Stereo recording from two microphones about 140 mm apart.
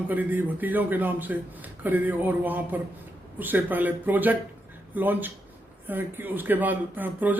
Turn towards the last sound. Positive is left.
turn(degrees=-10)  # may be behind; listen again after turning